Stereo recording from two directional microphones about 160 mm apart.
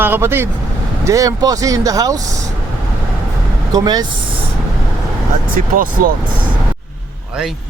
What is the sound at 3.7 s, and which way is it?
Speech, 25° right (ahead or behind).